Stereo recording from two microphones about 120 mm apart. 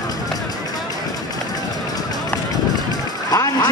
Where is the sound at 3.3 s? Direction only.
30° left (ahead or behind).